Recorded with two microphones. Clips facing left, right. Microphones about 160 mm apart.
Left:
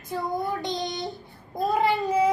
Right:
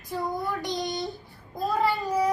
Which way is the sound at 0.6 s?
25° left (ahead or behind).